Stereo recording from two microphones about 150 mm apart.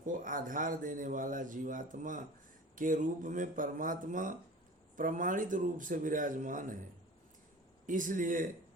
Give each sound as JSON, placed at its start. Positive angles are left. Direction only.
{"t": 0.0, "sound": "speech", "side_deg": -60}
{"t": 7.9, "sound": "speech", "side_deg": -60}